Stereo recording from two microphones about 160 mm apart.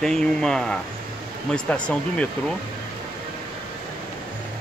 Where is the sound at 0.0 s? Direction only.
5° left (ahead or behind).